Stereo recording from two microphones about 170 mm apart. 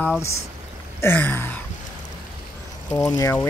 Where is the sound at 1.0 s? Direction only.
10° left (ahead or behind).